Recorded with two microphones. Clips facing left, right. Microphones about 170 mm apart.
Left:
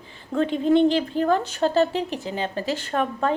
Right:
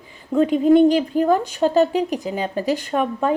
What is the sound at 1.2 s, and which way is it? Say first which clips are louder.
A woman's voice: right 4 dB; 10° right (ahead or behind).